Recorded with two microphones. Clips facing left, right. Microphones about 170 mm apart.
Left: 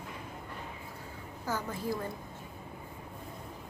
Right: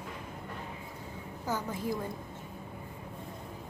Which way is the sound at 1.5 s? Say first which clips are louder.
Right 1 dB; 15° right (ahead or behind).